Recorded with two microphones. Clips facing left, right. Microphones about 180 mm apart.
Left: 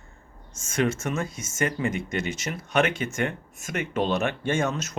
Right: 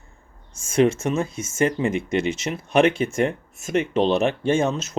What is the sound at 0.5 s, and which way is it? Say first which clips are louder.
Speech: right 7 dB; 30° right (ahead or behind).